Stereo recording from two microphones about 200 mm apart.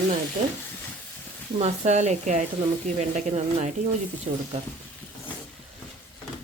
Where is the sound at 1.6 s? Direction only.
35° right (ahead or behind).